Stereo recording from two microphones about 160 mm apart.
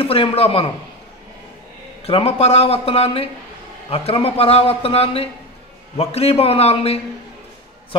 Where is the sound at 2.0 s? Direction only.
40° left (ahead or behind).